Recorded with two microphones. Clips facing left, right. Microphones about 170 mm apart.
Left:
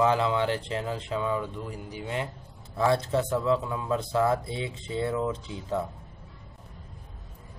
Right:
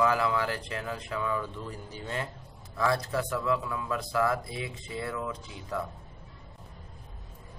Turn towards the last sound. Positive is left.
turn(degrees=25)  # may be behind; listen again after turning